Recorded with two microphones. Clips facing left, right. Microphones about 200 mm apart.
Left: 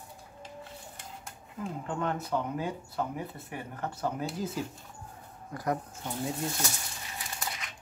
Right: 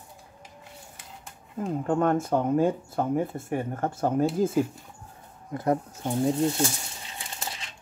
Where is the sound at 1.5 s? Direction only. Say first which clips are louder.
Right 9 dB; 45° right (ahead or behind).